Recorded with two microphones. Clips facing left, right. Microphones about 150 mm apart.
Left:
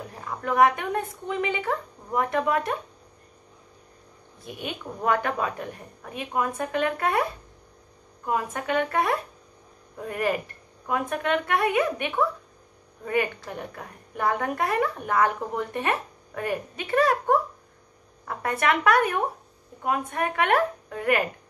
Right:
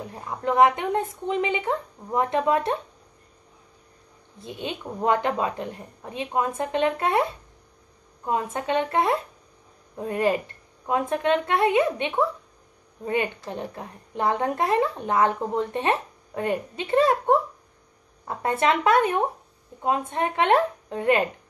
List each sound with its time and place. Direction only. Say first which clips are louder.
0.1 s a woman's voice: right 3 dB; 20° right (ahead or behind)
4.5 s a woman's voice: right 2 dB; 25° right (ahead or behind)